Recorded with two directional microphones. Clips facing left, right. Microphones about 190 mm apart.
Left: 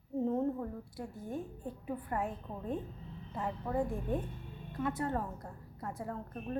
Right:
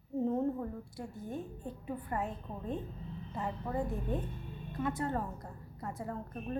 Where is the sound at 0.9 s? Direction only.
10° left (ahead or behind).